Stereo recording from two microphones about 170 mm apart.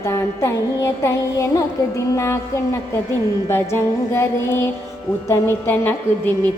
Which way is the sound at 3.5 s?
15° left (ahead or behind).